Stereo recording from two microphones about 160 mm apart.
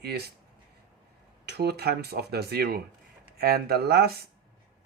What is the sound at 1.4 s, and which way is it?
Speech, 85° right.